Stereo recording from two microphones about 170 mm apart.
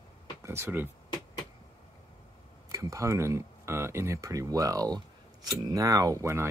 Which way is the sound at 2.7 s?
20° right (ahead or behind).